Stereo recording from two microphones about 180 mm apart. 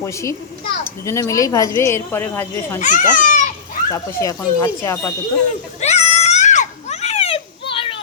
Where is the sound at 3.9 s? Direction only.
15° left (ahead or behind).